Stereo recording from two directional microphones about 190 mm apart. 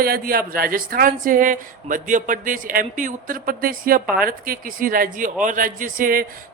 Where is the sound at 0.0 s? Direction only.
50° right (ahead or behind).